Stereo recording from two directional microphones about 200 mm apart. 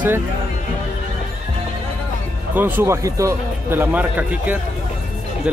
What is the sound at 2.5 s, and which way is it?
Speech, 10° right (ahead or behind).